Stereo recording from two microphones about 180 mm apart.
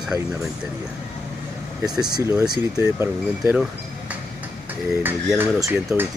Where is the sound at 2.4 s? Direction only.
20° right (ahead or behind).